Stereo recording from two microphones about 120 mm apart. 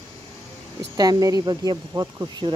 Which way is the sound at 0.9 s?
30° right (ahead or behind).